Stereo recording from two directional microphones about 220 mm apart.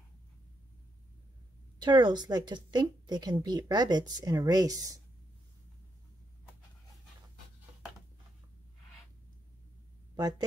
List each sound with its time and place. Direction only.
1.8 s speech: 20° right (ahead or behind)